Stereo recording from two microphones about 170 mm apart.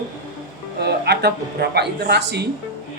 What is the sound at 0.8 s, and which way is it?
Speech, 75° right (ahead or behind).